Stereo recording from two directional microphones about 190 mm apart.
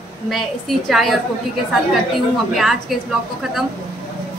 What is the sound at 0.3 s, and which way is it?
Speech, centre (ahead or behind).